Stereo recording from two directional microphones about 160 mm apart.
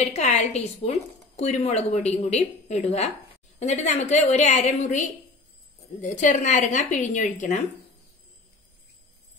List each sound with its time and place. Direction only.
0.0 s a woman's voice: 45° left (ahead or behind)